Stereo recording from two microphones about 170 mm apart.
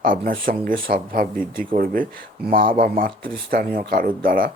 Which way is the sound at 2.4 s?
60° right (ahead or behind).